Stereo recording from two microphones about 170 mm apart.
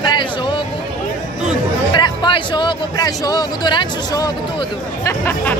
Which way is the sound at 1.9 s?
25° left (ahead or behind).